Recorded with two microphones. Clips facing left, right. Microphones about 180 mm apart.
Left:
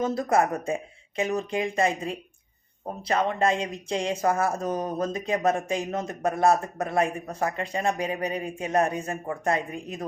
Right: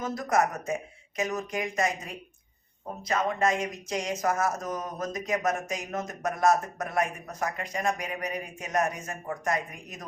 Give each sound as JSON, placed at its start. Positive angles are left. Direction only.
{"t": 0.0, "sound": "speech", "side_deg": 30}